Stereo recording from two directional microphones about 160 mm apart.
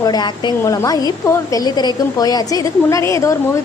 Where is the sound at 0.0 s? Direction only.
25° left (ahead or behind).